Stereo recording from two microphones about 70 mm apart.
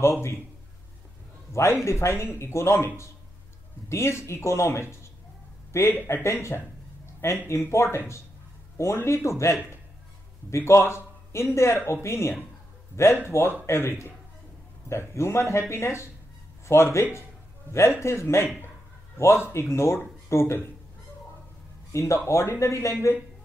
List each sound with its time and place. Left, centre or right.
0.0 s speech: left
1.5 s a man's voice: left
3.9 s a man's voice: left
21.9 s speech: left